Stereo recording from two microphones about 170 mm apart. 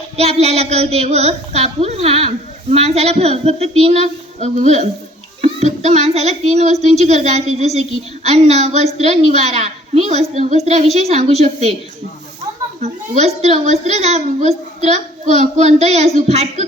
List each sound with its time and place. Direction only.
0.2 s a child's voice: 40° right (ahead or behind)
12.8 s a child's voice: 40° right (ahead or behind)